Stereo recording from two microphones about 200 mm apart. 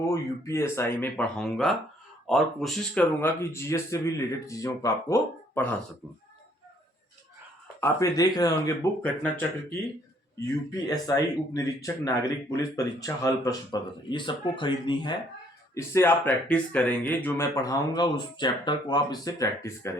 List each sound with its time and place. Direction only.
0.1 s speech: 15° left (ahead or behind)
7.8 s speech: 15° left (ahead or behind)